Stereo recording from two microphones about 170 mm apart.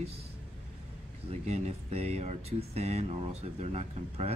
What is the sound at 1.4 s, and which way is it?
Speech, 40° right (ahead or behind).